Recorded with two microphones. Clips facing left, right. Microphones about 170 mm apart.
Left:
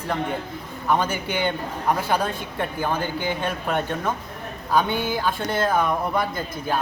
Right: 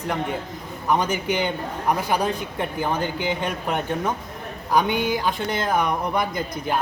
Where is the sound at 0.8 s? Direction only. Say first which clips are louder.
Right 1 dB; 15° right (ahead or behind).